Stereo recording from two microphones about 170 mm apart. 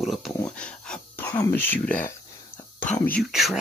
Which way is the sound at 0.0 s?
Centre (ahead or behind).